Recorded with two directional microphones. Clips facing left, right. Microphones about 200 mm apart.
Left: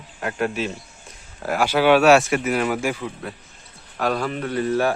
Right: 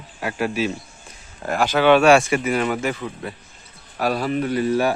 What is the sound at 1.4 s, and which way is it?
Speech, 10° left (ahead or behind).